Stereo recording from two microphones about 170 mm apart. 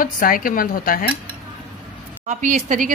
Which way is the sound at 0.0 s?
55° left (ahead or behind).